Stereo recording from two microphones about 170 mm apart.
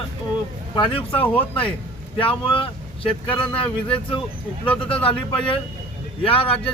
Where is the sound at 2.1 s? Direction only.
30° left (ahead or behind).